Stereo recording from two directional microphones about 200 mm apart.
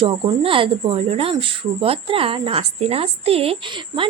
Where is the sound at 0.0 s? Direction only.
25° right (ahead or behind).